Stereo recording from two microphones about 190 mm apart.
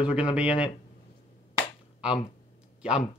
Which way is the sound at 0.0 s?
5° right (ahead or behind).